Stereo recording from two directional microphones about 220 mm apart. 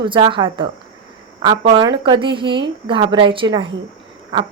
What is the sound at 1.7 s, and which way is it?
Speech, 20° right (ahead or behind).